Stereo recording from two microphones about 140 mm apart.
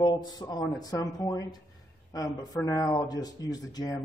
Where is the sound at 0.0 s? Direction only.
30° left (ahead or behind).